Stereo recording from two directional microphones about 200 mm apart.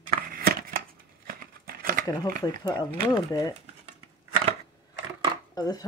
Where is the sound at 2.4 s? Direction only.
20° left (ahead or behind).